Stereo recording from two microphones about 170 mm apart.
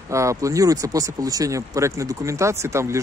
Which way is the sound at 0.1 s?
15° right (ahead or behind).